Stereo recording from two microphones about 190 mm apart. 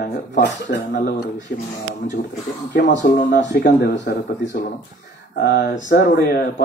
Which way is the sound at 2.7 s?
70° left (ahead or behind).